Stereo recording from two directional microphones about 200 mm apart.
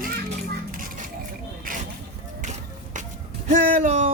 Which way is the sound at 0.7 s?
45° right (ahead or behind).